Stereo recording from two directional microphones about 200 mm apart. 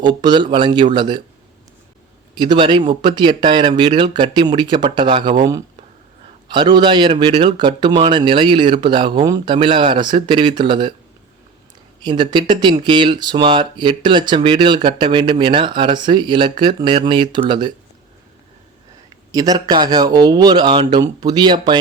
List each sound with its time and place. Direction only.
0.0 s speech: 20° right (ahead or behind)
2.3 s speech: 25° right (ahead or behind)
12.0 s speech: 25° right (ahead or behind)
19.3 s speech: 20° right (ahead or behind)